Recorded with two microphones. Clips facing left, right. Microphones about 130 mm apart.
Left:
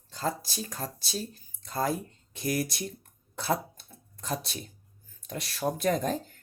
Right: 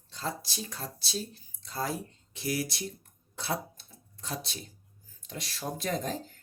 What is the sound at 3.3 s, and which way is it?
Cough, 50° left (ahead or behind).